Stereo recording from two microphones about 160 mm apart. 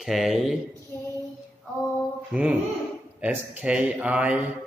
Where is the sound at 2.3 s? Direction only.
10° right (ahead or behind).